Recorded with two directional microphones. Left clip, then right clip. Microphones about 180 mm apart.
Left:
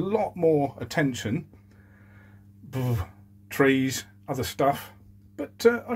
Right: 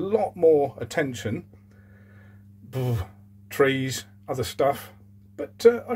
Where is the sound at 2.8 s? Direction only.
10° right (ahead or behind).